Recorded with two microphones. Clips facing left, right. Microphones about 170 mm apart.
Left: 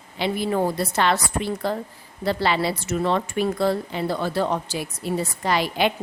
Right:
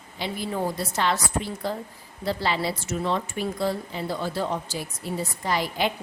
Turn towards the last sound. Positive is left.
turn(degrees=75)  # may be behind; listen again after turning